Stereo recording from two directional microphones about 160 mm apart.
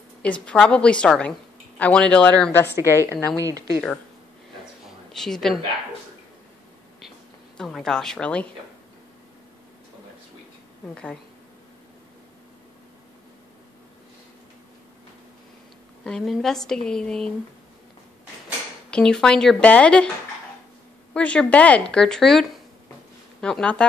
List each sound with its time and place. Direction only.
0.2 s a woman's voice: 5° left (ahead or behind)
3.3 s speech: 20° right (ahead or behind)
4.8 s a sound: 5° left (ahead or behind)
7.5 s speech: centre (ahead or behind)
16.0 s speech: 5° left (ahead or behind)
18.9 s speech: 5° left (ahead or behind)
21.1 s a woman's voice: 5° left (ahead or behind)